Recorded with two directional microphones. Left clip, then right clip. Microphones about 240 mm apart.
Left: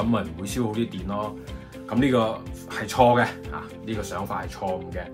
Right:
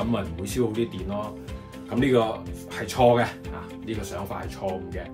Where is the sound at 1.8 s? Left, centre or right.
Centre.